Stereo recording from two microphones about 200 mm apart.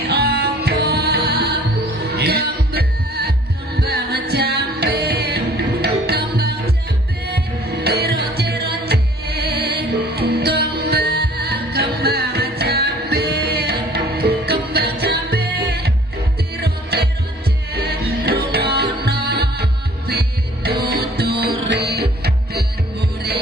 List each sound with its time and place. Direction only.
0.0 s music: 50° right (ahead or behind)